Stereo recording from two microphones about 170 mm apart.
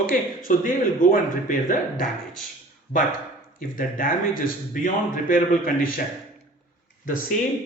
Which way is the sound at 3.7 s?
55° left (ahead or behind).